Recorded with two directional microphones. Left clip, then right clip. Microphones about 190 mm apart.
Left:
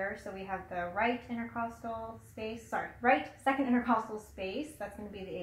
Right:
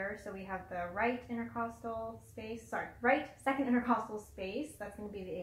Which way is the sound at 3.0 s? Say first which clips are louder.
Left 3 dB; 20° right (ahead or behind).